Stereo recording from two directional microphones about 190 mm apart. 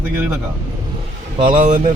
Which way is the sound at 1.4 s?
30° right (ahead or behind).